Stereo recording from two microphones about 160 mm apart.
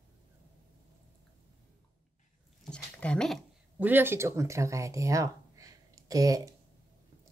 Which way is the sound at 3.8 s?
15° right (ahead or behind).